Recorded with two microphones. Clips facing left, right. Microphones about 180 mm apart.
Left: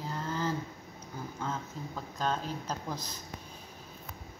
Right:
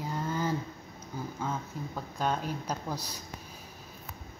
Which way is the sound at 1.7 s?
10° right (ahead or behind).